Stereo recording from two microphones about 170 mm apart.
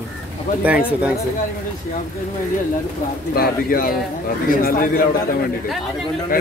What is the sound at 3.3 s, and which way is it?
Speech, 60° left (ahead or behind).